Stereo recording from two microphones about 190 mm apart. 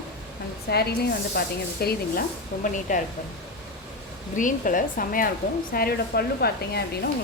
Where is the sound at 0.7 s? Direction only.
55° left (ahead or behind).